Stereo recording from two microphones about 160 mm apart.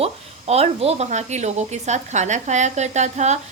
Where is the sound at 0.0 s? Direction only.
40° right (ahead or behind).